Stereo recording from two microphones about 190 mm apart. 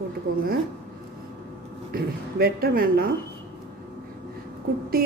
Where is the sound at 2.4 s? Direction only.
50° right (ahead or behind).